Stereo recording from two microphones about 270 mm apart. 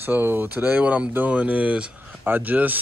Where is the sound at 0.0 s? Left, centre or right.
Centre.